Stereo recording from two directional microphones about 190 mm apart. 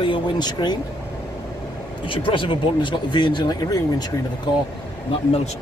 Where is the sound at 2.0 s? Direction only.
25° left (ahead or behind).